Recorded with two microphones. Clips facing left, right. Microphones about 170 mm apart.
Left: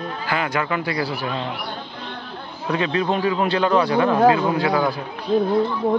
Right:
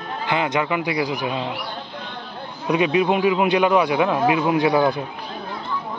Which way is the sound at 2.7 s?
15° right (ahead or behind).